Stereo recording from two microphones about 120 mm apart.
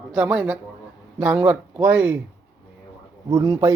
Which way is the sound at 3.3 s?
30° right (ahead or behind).